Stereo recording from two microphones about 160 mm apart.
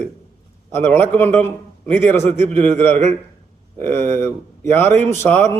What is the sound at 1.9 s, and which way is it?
Speech, 45° right (ahead or behind).